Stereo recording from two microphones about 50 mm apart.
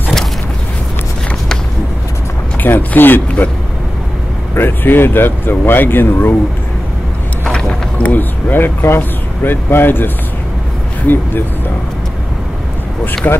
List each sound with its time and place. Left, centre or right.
2.6 s speech: left
4.6 s speech: left
7.5 s a sound: left
8.1 s speech: left
13.2 s speech: left